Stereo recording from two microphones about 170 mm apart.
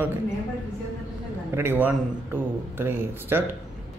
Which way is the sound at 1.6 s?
10° right (ahead or behind).